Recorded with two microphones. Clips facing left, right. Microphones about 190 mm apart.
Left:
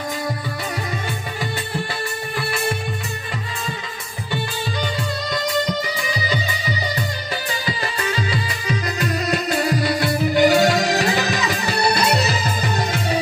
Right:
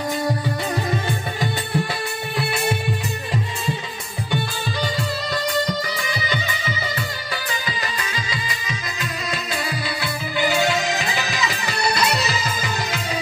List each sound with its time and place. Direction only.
6.3 s music: 15° left (ahead or behind)
7.6 s music: 35° left (ahead or behind)